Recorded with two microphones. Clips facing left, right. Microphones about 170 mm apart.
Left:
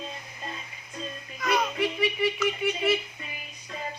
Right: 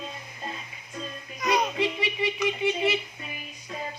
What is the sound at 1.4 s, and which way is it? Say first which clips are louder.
Speech: right 1 dB; 20° right (ahead or behind).